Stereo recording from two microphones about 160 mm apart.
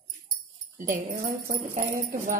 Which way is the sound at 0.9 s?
55° right (ahead or behind).